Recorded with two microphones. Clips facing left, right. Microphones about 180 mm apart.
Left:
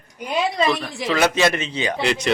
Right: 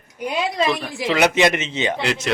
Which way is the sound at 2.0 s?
Centre (ahead or behind).